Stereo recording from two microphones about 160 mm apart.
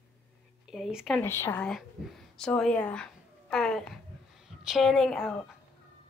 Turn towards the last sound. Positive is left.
turn(degrees=5)  # may be behind; listen again after turning